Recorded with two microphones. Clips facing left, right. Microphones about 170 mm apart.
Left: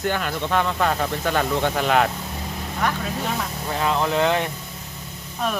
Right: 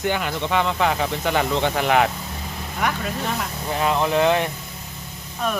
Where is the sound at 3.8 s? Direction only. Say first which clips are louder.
Right 2 dB; 15° right (ahead or behind).